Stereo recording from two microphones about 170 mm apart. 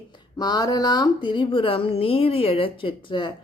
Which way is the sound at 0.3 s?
25° left (ahead or behind).